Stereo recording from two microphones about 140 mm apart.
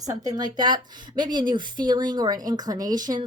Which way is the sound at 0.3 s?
30° right (ahead or behind).